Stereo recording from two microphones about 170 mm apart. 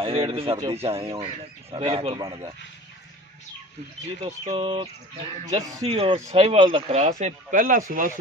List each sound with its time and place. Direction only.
0.0 s speech: 35° right (ahead or behind)
4.5 s speech: 30° right (ahead or behind)
5.8 s speech: 35° right (ahead or behind)
7.0 s speech: 40° right (ahead or behind)